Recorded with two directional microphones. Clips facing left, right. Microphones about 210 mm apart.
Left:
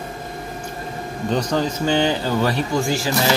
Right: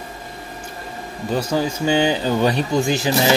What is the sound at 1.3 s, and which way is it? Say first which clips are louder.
Speech: right 1 dB; 5° right (ahead or behind).